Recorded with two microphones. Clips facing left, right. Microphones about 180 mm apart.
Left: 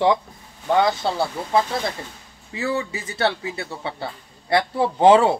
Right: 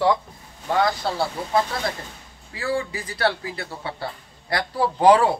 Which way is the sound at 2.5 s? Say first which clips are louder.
Left 1 dB; 25° left (ahead or behind).